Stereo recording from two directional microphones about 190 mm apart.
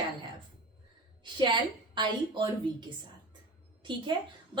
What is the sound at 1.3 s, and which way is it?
A woman's voice, 25° right (ahead or behind).